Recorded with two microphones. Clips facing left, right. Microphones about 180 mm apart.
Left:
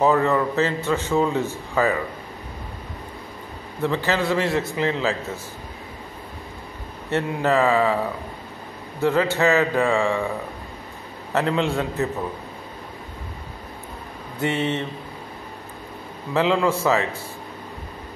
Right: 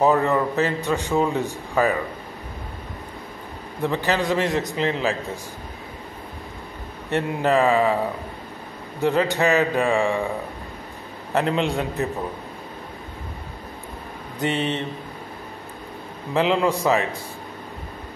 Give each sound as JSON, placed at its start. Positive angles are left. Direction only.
{"t": 0.0, "sound": "a man's voice", "side_deg": -15}
{"t": 3.8, "sound": "a man's voice", "side_deg": -15}
{"t": 7.1, "sound": "a man's voice", "side_deg": -15}
{"t": 9.0, "sound": "a man's voice", "side_deg": -15}
{"t": 11.3, "sound": "a man's voice", "side_deg": -15}
{"t": 14.4, "sound": "a man's voice", "side_deg": -15}
{"t": 16.3, "sound": "a man's voice", "side_deg": -15}